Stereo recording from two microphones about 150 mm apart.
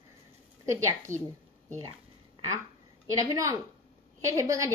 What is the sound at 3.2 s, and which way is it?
Speech, 20° right (ahead or behind).